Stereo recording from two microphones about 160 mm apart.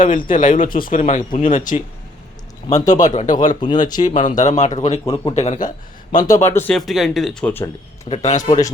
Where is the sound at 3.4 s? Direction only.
25° left (ahead or behind).